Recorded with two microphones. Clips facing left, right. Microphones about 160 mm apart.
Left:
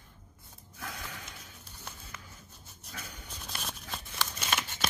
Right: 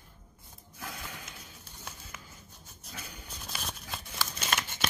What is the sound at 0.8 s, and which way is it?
Snort, centre (ahead or behind).